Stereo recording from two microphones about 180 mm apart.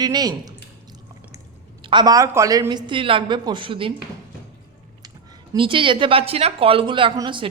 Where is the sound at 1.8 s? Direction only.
25° right (ahead or behind).